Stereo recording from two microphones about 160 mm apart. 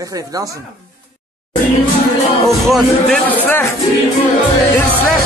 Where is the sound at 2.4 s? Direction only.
Centre (ahead or behind).